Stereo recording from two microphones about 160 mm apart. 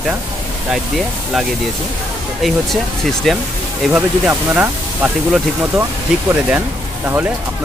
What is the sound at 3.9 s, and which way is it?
Speech, 10° right (ahead or behind).